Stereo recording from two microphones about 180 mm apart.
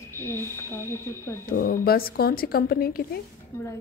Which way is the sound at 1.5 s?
55° left (ahead or behind).